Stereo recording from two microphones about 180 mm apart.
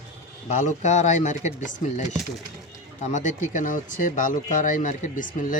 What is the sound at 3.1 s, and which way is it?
Speech, 45° left (ahead or behind).